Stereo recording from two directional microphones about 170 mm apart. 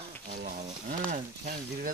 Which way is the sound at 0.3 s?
50° right (ahead or behind).